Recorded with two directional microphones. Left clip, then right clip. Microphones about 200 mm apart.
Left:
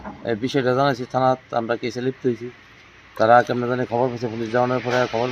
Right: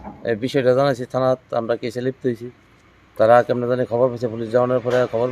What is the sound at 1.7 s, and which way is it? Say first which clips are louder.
Speech: right 1 dB; 30° right (ahead or behind).